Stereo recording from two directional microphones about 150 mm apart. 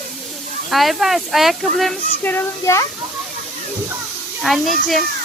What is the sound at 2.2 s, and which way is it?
Speech, 15° left (ahead or behind).